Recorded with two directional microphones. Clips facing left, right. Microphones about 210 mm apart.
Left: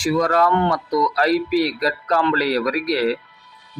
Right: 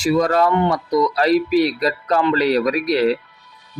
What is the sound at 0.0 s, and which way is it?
Speech, 25° right (ahead or behind).